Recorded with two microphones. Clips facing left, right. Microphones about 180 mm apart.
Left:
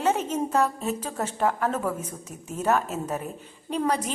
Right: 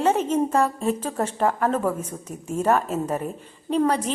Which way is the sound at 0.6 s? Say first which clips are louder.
Right 3 dB; 5° left (ahead or behind).